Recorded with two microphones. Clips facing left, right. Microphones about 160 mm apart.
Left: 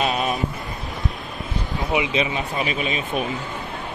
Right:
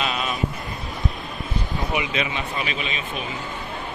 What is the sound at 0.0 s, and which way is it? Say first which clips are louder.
Vehicle: left 4 dB; 45° left (ahead or behind).